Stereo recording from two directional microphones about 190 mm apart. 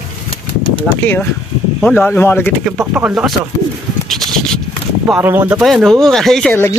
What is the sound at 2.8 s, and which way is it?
Speech, 10° right (ahead or behind).